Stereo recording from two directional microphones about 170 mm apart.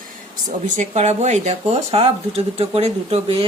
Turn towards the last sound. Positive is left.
turn(degrees=-35)  # may be behind; listen again after turning